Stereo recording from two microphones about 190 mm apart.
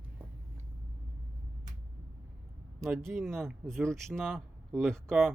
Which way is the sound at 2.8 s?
Centre (ahead or behind).